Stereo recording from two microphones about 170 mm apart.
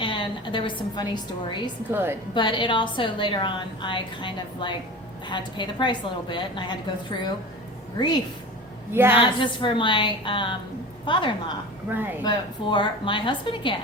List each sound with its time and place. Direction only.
0.0 s a woman's voice: 30° left (ahead or behind)
1.9 s a woman's voice: 15° right (ahead or behind)
2.3 s a woman's voice: 25° left (ahead or behind)
7.9 s a woman's voice: 25° left (ahead or behind)
8.9 s a woman's voice: 15° right (ahead or behind)
9.1 s a woman's voice: 30° left (ahead or behind)
11.9 s a woman's voice: 10° right (ahead or behind)
12.2 s a woman's voice: 25° left (ahead or behind)